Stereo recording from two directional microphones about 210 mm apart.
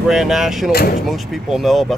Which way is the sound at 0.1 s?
Centre (ahead or behind).